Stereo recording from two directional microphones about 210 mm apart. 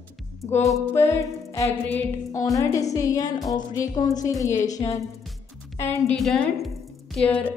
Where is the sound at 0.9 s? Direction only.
15° left (ahead or behind).